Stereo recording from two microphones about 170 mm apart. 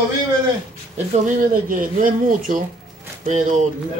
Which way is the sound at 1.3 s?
55° right (ahead or behind).